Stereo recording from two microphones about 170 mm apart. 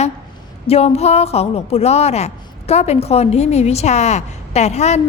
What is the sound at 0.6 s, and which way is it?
A woman's voice, 35° left (ahead or behind).